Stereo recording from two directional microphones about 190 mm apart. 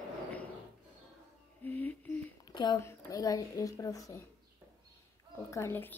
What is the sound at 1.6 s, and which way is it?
Speech, 10° left (ahead or behind).